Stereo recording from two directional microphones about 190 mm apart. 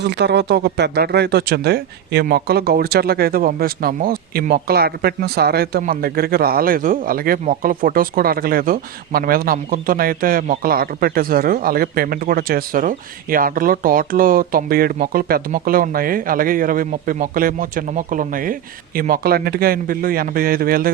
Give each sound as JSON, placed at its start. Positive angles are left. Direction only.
{"t": 0.0, "sound": "speech", "side_deg": -65}